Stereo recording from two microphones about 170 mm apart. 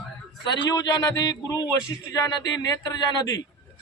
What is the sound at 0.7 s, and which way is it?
Speech, 20° left (ahead or behind).